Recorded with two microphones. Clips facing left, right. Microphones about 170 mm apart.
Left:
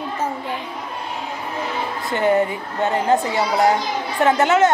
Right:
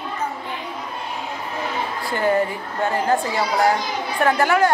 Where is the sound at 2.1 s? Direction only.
20° left (ahead or behind).